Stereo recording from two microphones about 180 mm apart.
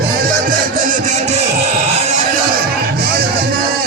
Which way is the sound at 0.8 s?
45° right (ahead or behind).